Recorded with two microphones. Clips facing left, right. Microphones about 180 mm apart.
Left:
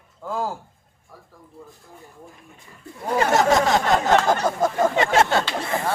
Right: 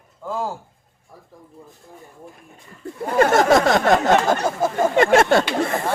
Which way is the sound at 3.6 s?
60° right (ahead or behind).